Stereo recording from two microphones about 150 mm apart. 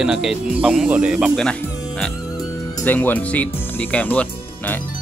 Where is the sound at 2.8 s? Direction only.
10° left (ahead or behind).